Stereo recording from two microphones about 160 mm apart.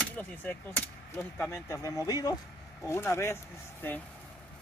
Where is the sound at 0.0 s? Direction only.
10° left (ahead or behind).